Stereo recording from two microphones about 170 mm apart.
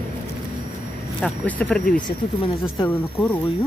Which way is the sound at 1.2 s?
5° left (ahead or behind).